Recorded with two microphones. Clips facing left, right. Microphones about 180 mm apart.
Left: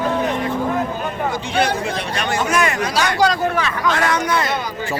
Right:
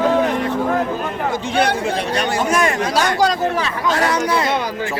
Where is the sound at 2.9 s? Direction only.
45° right (ahead or behind).